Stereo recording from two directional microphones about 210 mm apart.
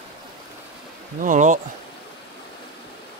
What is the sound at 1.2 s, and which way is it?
Speech, 35° right (ahead or behind).